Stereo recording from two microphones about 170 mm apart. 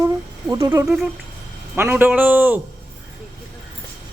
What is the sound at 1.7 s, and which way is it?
Speech, 10° right (ahead or behind).